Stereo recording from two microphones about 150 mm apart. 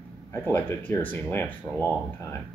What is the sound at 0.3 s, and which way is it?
Speech, 15° left (ahead or behind).